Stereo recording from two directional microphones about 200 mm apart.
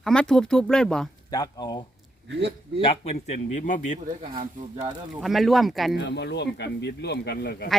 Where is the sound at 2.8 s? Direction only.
30° left (ahead or behind).